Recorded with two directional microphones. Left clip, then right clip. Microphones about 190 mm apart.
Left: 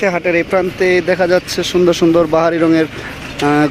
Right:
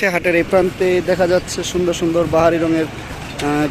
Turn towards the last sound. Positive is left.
turn(degrees=40)  # may be behind; listen again after turning